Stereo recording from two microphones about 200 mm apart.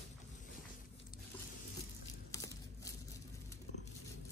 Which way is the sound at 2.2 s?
15° left (ahead or behind).